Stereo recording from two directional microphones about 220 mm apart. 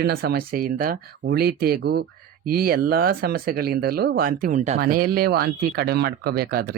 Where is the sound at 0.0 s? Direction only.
45° right (ahead or behind).